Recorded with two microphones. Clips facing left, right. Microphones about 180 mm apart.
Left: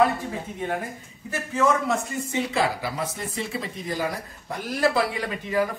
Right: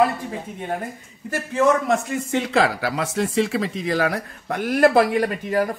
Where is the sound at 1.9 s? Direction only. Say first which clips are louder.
Right 5 dB; 90° right.